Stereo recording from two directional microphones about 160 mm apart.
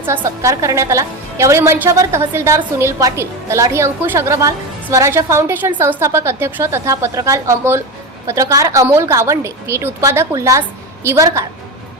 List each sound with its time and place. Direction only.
0.0 s a woman's voice: 15° right (ahead or behind)